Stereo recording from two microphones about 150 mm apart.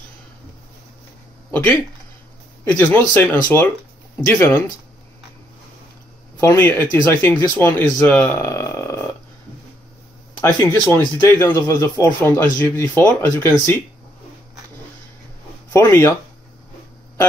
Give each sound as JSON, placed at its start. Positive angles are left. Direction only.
{"t": 1.5, "sound": "speech", "side_deg": 10}
{"t": 6.4, "sound": "speech", "side_deg": 15}
{"t": 8.4, "sound": "a sound", "side_deg": 20}
{"t": 10.4, "sound": "speech", "side_deg": 15}
{"t": 15.7, "sound": "speech", "side_deg": 15}